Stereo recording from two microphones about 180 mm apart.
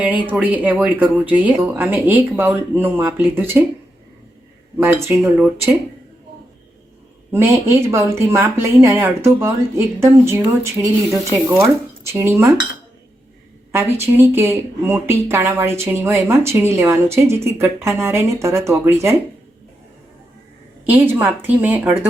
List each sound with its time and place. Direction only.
0.3 s speech: 10° right (ahead or behind)
4.8 s speech: 15° right (ahead or behind)
7.3 s speech: 15° right (ahead or behind)
13.7 s speech: 15° right (ahead or behind)
20.8 s speech: 10° right (ahead or behind)